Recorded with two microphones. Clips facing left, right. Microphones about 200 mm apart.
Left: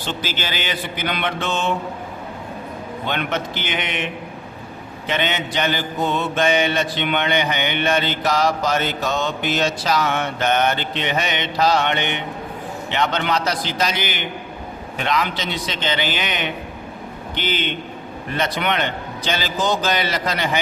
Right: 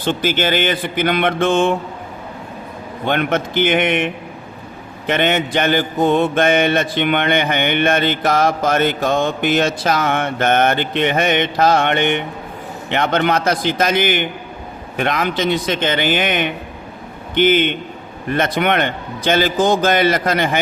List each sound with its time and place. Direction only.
0.0 s mantra: 55° right (ahead or behind)
3.1 s mantra: 50° right (ahead or behind)